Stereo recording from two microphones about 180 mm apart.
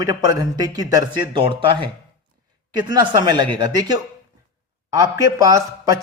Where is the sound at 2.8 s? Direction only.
20° right (ahead or behind).